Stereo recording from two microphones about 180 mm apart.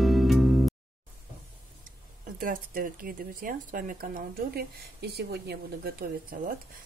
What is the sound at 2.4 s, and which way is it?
Speech, 50° right (ahead or behind).